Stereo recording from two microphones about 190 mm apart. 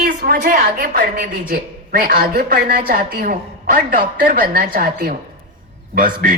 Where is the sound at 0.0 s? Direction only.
55° right (ahead or behind).